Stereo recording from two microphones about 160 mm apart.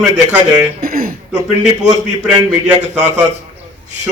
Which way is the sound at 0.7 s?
65° right (ahead or behind).